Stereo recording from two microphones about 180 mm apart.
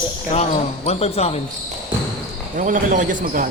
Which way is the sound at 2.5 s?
45° right (ahead or behind).